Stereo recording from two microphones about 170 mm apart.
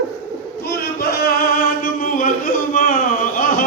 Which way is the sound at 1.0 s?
65° left (ahead or behind).